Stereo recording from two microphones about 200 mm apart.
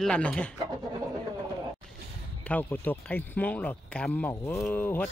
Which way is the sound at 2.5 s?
10° left (ahead or behind).